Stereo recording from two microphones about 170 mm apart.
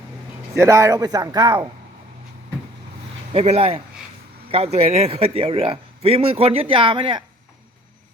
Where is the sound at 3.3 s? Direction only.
35° right (ahead or behind).